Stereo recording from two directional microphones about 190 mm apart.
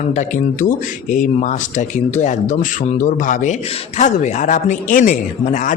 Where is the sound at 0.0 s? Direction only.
40° left (ahead or behind).